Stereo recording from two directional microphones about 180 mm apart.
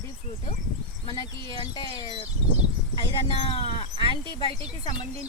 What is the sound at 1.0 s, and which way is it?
Speech, 20° left (ahead or behind).